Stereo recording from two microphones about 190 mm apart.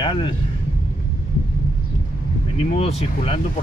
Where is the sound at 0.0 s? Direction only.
25° left (ahead or behind).